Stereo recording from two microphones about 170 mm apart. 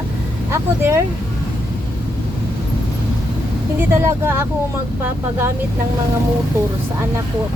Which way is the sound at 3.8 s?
15° right (ahead or behind).